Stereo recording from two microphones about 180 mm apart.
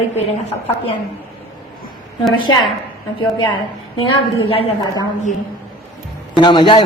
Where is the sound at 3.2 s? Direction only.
25° left (ahead or behind).